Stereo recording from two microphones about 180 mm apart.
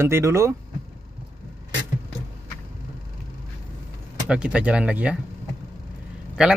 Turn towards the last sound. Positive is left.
turn(degrees=-5)  # may be behind; listen again after turning